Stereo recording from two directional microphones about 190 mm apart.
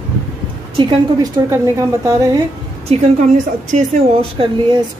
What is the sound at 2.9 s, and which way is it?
Speech, 35° right (ahead or behind).